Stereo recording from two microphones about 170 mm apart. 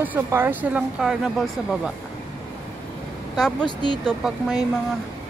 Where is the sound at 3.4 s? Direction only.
5° left (ahead or behind).